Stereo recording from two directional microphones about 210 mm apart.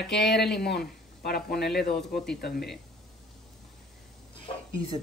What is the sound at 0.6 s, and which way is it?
Speech, 50° left (ahead or behind).